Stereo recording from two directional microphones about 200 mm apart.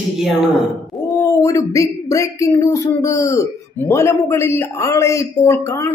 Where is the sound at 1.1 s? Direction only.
15° left (ahead or behind).